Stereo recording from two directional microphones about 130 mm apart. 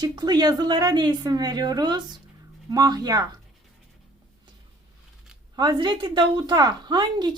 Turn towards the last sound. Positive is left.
turn(degrees=-35)  # may be behind; listen again after turning